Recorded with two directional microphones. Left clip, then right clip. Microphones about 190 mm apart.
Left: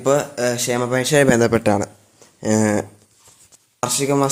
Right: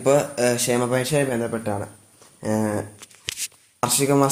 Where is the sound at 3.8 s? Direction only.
15° left (ahead or behind).